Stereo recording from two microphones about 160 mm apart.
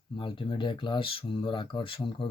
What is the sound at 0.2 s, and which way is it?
Speech, 30° left (ahead or behind).